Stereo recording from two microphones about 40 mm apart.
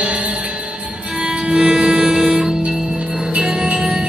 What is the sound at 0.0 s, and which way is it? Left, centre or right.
Music, right.